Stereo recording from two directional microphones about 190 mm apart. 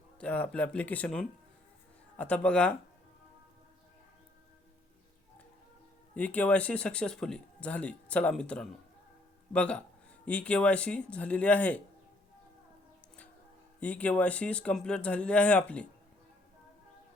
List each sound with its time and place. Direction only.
0.2 s speech: 10° left (ahead or behind)
6.1 s speech: 5° left (ahead or behind)
13.7 s speech: 5° left (ahead or behind)